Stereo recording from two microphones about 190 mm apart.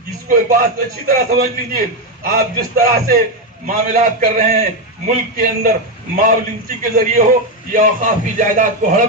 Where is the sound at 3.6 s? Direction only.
45° right (ahead or behind).